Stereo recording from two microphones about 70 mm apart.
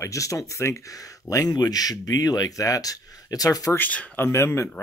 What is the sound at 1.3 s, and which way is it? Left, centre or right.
Speech, left.